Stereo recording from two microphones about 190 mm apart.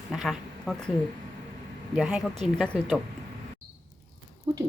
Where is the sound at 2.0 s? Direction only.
5° right (ahead or behind).